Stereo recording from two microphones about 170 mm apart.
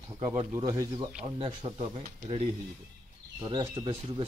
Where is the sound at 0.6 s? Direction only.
25° right (ahead or behind).